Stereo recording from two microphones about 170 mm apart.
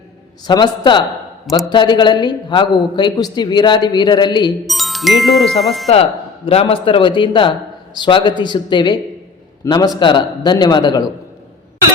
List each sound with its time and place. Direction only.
0.4 s a man's voice: 25° left (ahead or behind)
4.6 s speech: centre (ahead or behind)
5.9 s a man's voice: 35° left (ahead or behind)